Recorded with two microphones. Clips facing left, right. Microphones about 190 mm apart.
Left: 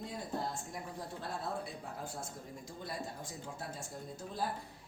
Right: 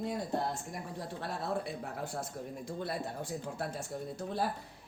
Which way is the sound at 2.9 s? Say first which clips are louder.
Right 3 dB; 65° right (ahead or behind).